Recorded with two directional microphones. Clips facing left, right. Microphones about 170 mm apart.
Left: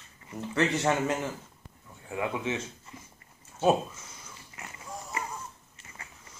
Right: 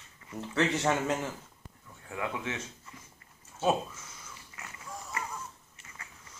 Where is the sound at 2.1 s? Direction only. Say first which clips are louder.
Left 4 dB; 20° left (ahead or behind).